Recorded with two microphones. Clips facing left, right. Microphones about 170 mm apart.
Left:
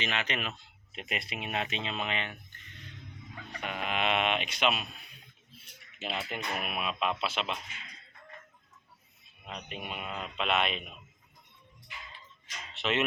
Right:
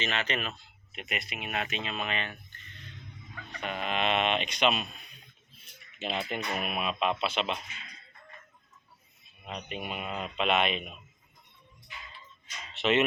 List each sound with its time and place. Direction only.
0.0 s speech: 15° left (ahead or behind)
0.9 s speech: 30° left (ahead or behind); by 7.6 s centre (ahead or behind)
9.5 s a man's voice: centre (ahead or behind)
12.7 s speech: centre (ahead or behind)